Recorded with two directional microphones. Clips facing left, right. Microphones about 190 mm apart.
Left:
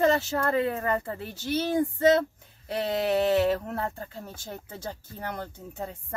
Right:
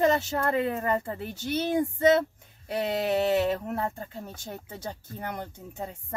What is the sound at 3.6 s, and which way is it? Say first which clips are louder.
Speech: right 1 dB; 20° right (ahead or behind).